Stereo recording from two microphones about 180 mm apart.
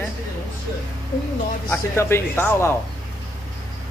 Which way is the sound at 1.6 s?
15° left (ahead or behind).